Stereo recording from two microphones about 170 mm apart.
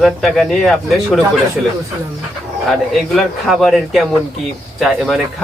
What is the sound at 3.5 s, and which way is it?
Speech, centre (ahead or behind).